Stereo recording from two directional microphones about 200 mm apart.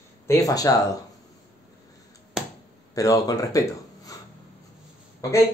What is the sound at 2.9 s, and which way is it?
Speech, 15° left (ahead or behind).